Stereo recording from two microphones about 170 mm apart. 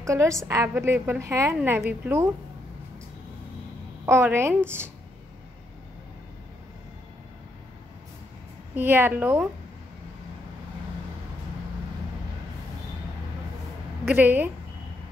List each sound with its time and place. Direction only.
0.0 s a woman's voice: 20° right (ahead or behind)
4.0 s a woman's voice: 15° right (ahead or behind)
8.7 s a woman's voice: 10° right (ahead or behind)
14.0 s a woman's voice: 10° right (ahead or behind)